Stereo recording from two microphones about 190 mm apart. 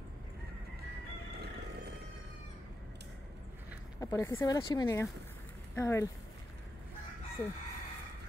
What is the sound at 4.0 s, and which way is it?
Speech, 15° left (ahead or behind).